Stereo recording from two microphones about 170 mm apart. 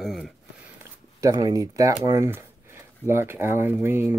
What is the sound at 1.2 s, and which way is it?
Speech, 20° right (ahead or behind).